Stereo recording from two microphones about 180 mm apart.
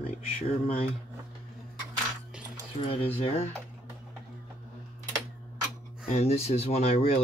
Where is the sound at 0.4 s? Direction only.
30° left (ahead or behind).